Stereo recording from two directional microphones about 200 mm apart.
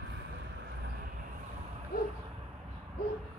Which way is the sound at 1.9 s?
50° left (ahead or behind).